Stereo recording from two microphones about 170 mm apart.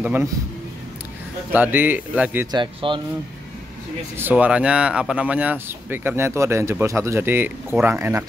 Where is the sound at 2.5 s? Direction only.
30° right (ahead or behind).